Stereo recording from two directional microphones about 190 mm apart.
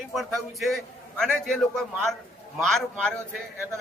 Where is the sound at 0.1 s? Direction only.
Centre (ahead or behind).